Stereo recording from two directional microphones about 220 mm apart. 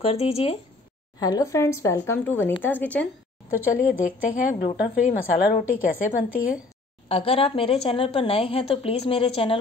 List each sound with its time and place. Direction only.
0.0 s speech: 25° left (ahead or behind)
1.2 s speech: 15° left (ahead or behind)
4.0 s a woman's voice: 40° left (ahead or behind)
7.1 s speech: 25° left (ahead or behind)